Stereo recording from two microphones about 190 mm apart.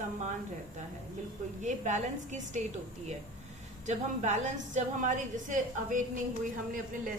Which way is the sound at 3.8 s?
40° right (ahead or behind).